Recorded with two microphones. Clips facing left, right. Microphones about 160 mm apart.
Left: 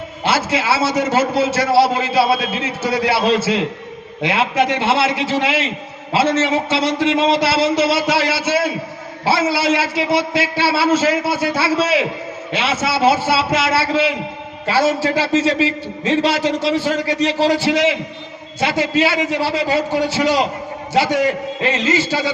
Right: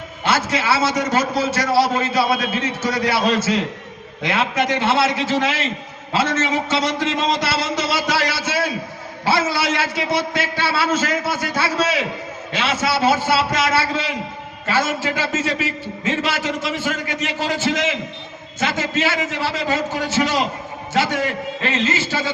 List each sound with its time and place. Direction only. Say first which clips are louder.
0.3 s a man's voice: left 2 dB; 30° left (ahead or behind)
21.6 s a man's voice: left 4 dB; 35° left (ahead or behind)